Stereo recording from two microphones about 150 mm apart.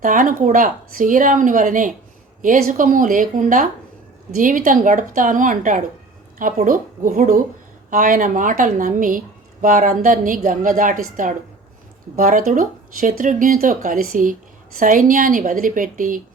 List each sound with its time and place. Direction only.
0.0 s a woman's voice: 60° right (ahead or behind)